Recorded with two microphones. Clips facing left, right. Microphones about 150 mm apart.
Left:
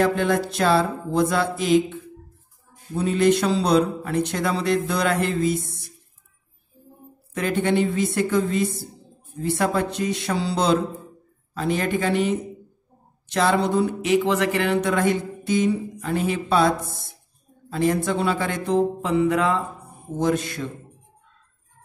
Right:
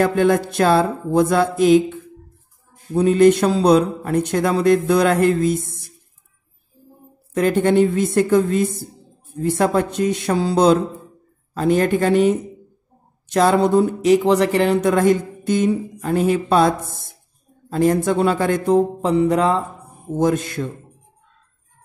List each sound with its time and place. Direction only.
0.0 s speech: 50° right (ahead or behind)
2.9 s speech: 50° right (ahead or behind)
7.3 s speech: 45° right (ahead or behind)
20.2 s speech: 45° right (ahead or behind)